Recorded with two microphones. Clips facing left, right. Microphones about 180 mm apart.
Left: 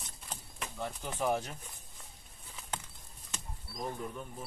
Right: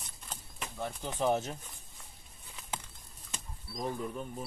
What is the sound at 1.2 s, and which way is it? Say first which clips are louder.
Speech: right 2 dB; 25° right (ahead or behind).